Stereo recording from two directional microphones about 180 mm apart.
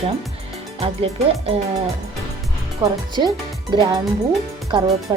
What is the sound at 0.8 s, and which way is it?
Speech, 35° right (ahead or behind).